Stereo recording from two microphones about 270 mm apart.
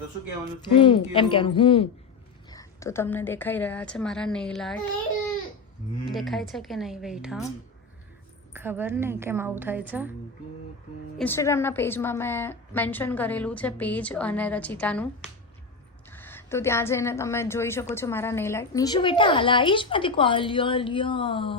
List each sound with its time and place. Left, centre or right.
0.7 s a woman's voice: centre
6.1 s speech: centre
8.5 s a woman's voice: centre
11.2 s a woman's voice: centre